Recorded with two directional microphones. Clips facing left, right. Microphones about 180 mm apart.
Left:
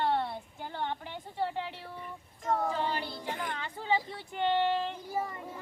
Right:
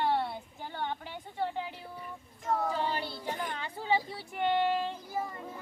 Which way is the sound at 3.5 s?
15° right (ahead or behind).